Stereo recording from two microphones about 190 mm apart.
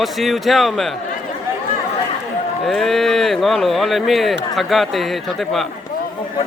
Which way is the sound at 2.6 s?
Centre (ahead or behind).